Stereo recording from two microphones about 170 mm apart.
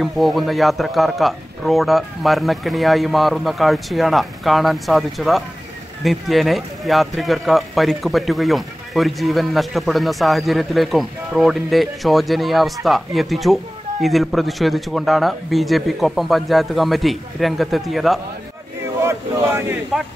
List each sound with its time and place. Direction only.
0.0 s a man's voice: centre (ahead or behind)
19.0 s speech: 15° right (ahead or behind)
19.9 s a man's voice: centre (ahead or behind)